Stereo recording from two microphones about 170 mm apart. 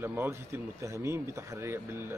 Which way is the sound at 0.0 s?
10° right (ahead or behind).